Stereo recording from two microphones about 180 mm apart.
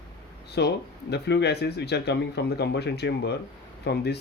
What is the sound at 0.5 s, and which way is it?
Speech, 65° left (ahead or behind).